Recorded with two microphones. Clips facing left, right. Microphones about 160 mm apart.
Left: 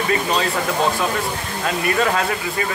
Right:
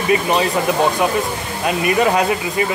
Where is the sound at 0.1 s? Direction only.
15° right (ahead or behind).